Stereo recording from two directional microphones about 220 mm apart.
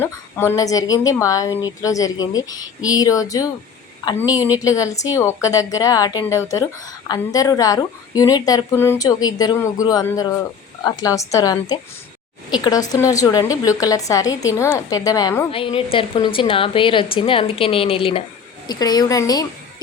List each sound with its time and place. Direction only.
0.0 s a woman's voice: 10° left (ahead or behind)